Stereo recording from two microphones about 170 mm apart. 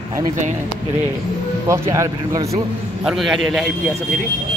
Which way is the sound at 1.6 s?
20° right (ahead or behind).